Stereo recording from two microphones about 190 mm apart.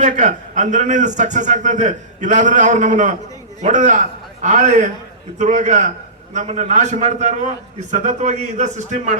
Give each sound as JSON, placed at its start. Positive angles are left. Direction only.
{"t": 0.0, "sound": "a man's voice", "side_deg": -40}